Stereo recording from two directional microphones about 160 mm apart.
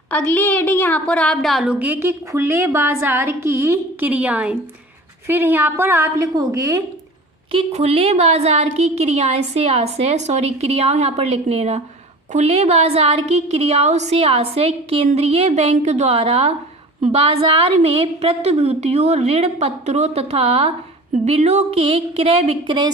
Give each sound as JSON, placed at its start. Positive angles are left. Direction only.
{"t": 0.1, "sound": "a woman's voice", "side_deg": 10}
{"t": 7.5, "sound": "a woman's voice", "side_deg": -40}